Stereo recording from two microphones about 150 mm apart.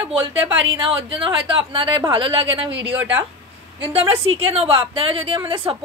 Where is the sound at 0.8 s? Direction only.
35° right (ahead or behind).